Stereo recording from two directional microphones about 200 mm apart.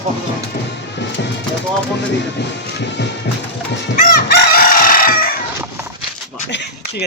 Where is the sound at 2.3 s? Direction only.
60° left (ahead or behind).